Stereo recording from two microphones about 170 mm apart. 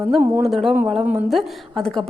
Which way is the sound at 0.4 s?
Centre (ahead or behind).